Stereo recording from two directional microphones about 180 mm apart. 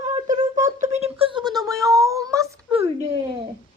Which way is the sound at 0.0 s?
40° right (ahead or behind).